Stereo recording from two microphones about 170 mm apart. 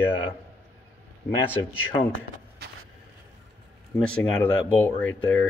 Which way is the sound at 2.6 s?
70° right (ahead or behind).